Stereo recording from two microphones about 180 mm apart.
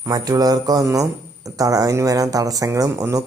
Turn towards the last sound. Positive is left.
turn(degrees=-20)  # may be behind; listen again after turning